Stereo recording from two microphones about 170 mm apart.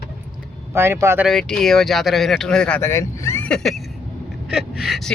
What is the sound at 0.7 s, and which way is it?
Speech, 15° right (ahead or behind).